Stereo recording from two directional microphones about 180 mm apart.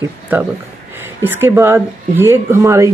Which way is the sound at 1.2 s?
10° right (ahead or behind).